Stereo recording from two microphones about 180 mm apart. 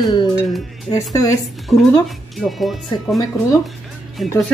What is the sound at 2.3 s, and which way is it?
Speech, centre (ahead or behind).